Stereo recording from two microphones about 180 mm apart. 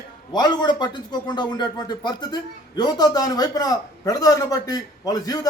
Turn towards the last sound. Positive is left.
turn(degrees=20)  # may be behind; listen again after turning